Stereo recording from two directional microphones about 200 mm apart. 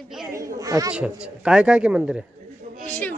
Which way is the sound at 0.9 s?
5° right (ahead or behind).